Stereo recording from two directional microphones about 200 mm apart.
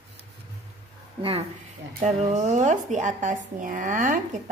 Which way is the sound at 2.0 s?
35° right (ahead or behind).